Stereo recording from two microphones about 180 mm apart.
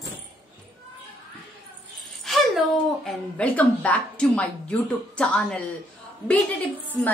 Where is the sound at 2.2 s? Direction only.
Centre (ahead or behind).